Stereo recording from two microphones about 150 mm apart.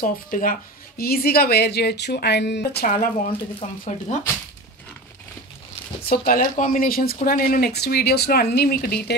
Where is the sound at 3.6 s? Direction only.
50° left (ahead or behind).